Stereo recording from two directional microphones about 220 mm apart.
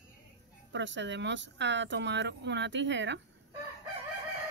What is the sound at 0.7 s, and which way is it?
Speech, 55° right (ahead or behind).